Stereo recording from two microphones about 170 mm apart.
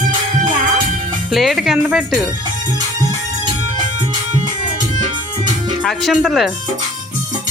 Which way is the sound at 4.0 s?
45° right (ahead or behind).